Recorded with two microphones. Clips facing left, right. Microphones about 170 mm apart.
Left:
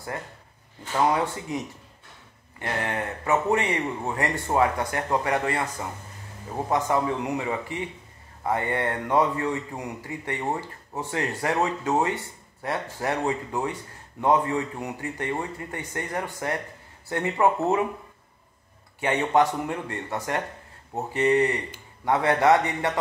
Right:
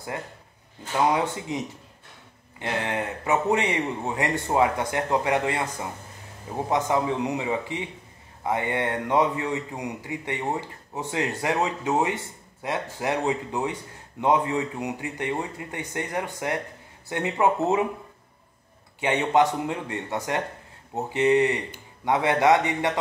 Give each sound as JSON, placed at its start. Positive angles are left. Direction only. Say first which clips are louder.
{"t": 0.1, "sound": "speech", "louder": "right 1 dB", "side_deg": -20}
{"t": 2.6, "sound": "speech", "louder": "right 1 dB", "side_deg": -20}
{"t": 10.4, "sound": "speech", "louder": "even", "side_deg": 0}
{"t": 11.0, "sound": "speech", "louder": "right 1 dB", "side_deg": -15}
{"t": 18.9, "sound": "speech", "louder": "right 1 dB", "side_deg": -20}